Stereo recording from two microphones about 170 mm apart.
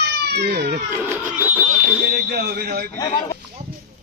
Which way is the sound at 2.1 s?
65° right (ahead or behind).